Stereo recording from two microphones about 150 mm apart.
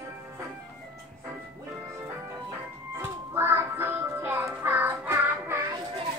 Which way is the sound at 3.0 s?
15° right (ahead or behind).